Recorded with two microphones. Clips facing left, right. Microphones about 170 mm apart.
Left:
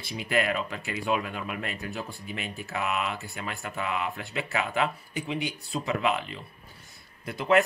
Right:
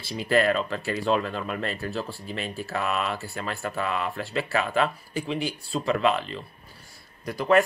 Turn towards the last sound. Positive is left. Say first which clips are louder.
# right 2 dB
turn(degrees=25)  # may be behind; listen again after turning